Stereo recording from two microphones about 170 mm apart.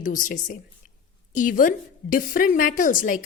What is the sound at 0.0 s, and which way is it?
A woman's voice, 50° left (ahead or behind).